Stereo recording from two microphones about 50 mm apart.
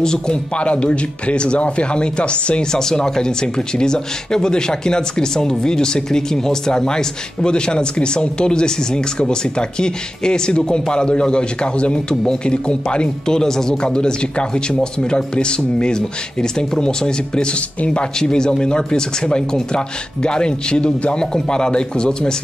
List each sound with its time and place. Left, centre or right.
0.0 s speech: centre
0.6 s a man's voice: left